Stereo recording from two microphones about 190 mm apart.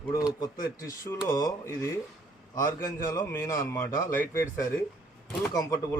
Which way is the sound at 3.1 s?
15° left (ahead or behind).